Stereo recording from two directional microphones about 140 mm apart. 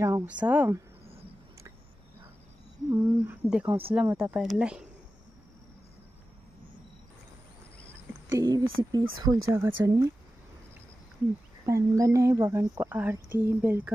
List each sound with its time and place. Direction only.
0.0 s speech: 15° right (ahead or behind)
2.9 s speech: 15° right (ahead or behind)
8.3 s speech: 25° right (ahead or behind)
11.6 s speech: 20° right (ahead or behind)